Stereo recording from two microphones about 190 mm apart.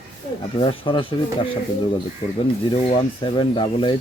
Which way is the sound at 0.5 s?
25° left (ahead or behind).